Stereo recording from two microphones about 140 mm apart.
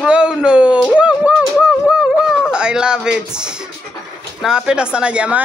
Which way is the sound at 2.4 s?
5° right (ahead or behind).